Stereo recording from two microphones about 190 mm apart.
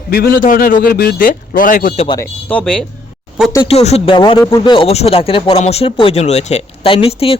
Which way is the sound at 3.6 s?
35° left (ahead or behind).